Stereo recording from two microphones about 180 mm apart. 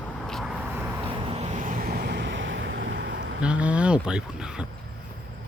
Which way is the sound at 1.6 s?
50° right (ahead or behind).